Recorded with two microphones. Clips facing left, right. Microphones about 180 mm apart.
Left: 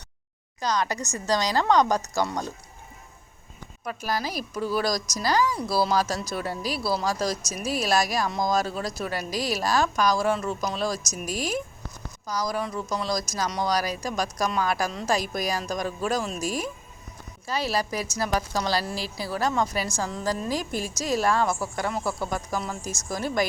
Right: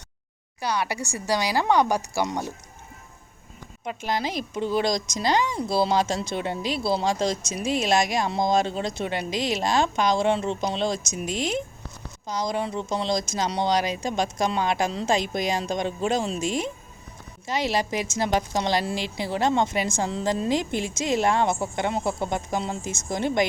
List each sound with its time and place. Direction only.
0.6 s speech: 10° right (ahead or behind)
3.8 s speech: 20° right (ahead or behind)